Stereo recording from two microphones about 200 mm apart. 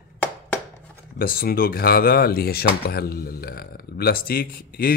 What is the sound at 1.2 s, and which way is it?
Speech, 45° left (ahead or behind).